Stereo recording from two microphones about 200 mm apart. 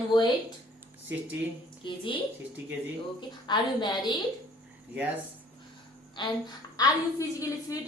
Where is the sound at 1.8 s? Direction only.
25° left (ahead or behind).